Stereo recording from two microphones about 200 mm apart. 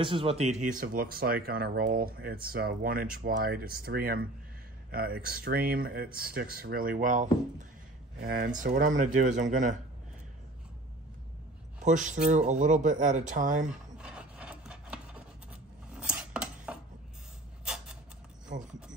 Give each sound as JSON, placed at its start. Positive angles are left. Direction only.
{"t": 0.0, "sound": "speech", "side_deg": -25}
{"t": 11.8, "sound": "speech", "side_deg": -40}
{"t": 13.9, "sound": "rub", "side_deg": -5}
{"t": 16.0, "sound": "a sound", "side_deg": -5}